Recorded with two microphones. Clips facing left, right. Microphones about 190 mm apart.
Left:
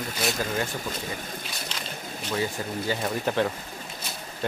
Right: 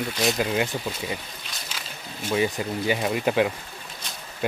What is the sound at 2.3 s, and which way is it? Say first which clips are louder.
Speech: right 5 dB; 15° right (ahead or behind).